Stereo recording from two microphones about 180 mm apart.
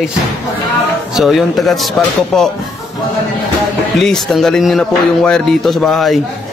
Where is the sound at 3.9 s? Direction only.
Centre (ahead or behind).